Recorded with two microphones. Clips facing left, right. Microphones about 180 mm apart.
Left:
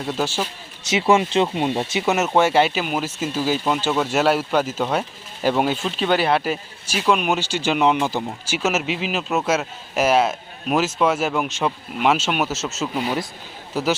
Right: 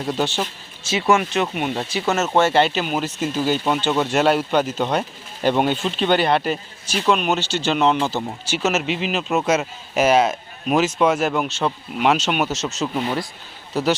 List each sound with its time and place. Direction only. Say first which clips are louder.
0.0 s speech: right 1 dB; centre (ahead or behind)
0.9 s speech: left 1 dB; 20° left (ahead or behind); by 13.9 s 5° left (ahead or behind)